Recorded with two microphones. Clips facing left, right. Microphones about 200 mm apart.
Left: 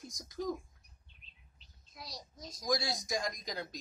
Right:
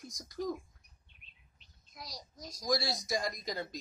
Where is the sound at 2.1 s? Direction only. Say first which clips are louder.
Even; 25° left (ahead or behind).